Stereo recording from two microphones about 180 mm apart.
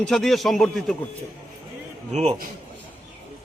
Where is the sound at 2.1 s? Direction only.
40° right (ahead or behind).